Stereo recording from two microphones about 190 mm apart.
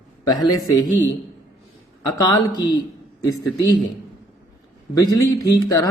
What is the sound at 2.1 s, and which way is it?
Speech, 20° left (ahead or behind).